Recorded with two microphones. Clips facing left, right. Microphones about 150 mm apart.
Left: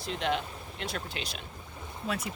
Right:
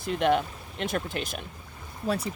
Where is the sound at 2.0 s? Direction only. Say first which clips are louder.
Right 6 dB; 35° right (ahead or behind).